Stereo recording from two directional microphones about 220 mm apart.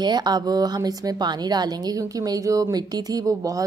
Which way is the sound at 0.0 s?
20° right (ahead or behind).